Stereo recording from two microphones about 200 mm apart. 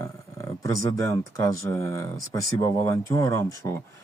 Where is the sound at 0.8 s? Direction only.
70° right (ahead or behind).